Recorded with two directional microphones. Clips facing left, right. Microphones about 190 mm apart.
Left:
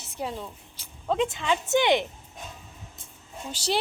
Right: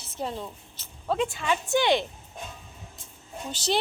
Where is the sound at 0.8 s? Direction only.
10° left (ahead or behind).